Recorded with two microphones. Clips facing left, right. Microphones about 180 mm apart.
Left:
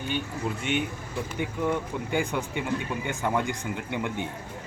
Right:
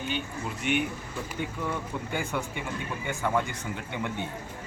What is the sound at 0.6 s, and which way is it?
Speech, 25° left (ahead or behind).